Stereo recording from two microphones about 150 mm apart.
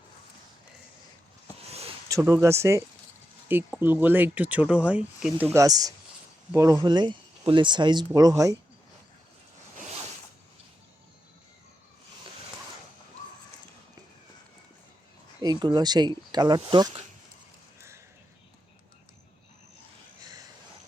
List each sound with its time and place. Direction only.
2.0 s speech: 20° right (ahead or behind)
5.5 s speech: 25° right (ahead or behind)
15.4 s speech: 25° right (ahead or behind)
17.7 s a sound: 20° right (ahead or behind)